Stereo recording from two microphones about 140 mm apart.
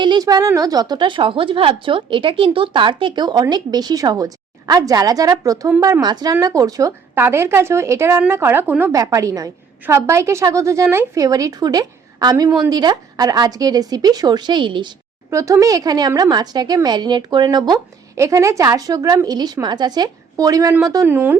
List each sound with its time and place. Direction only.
0.0 s a woman's voice: 30° right (ahead or behind)
12.5 s a woman's voice: 5° right (ahead or behind)
12.7 s a woman's voice: 30° right (ahead or behind)
15.3 s a woman's voice: 20° right (ahead or behind)
21.1 s a woman's voice: 15° right (ahead or behind)